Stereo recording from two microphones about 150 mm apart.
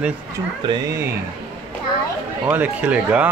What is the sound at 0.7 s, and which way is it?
Speech, 20° right (ahead or behind).